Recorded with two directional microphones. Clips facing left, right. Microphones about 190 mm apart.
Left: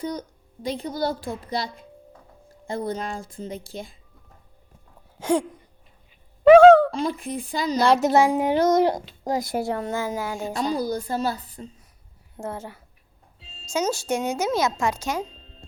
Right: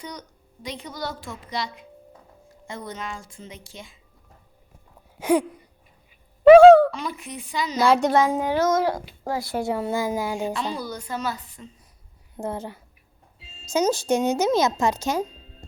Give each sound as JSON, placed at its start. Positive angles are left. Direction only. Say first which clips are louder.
{"t": 0.0, "sound": "a woman's voice", "louder": "left 8 dB", "side_deg": 30}
{"t": 5.2, "sound": "a sound", "louder": "right 2 dB", "side_deg": -10}
{"t": 7.2, "sound": "a woman's voice", "louder": "left 6 dB", "side_deg": 35}
{"t": 7.8, "sound": "a child's voice", "louder": "even", "side_deg": 0}
{"t": 9.6, "sound": "a woman's voice", "louder": "right 1 dB", "side_deg": -5}
{"t": 10.5, "sound": "a woman's voice", "louder": "left 5 dB", "side_deg": 40}
{"t": 12.4, "sound": "a woman's voice", "louder": "right 3 dB", "side_deg": -15}
{"t": 15.2, "sound": "music", "louder": "right 4 dB", "side_deg": -10}